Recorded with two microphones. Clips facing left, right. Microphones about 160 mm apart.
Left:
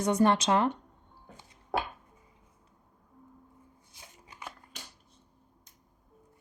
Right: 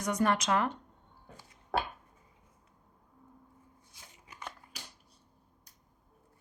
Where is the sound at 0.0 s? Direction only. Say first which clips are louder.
Left 5 dB; 30° left (ahead or behind).